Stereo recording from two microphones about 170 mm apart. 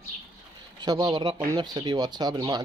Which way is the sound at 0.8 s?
25° right (ahead or behind).